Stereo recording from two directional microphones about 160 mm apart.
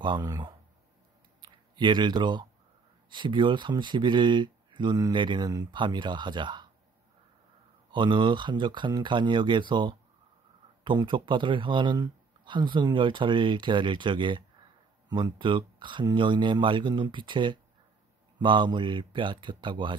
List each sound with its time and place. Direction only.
0.0 s speech: 25° right (ahead or behind)
7.9 s speech: 30° right (ahead or behind)